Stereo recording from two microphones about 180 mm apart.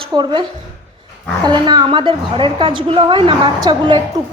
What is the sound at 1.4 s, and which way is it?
A woman's voice, 25° right (ahead or behind).